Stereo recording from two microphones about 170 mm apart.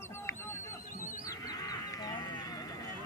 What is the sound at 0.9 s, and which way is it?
Fowl, 50° left (ahead or behind).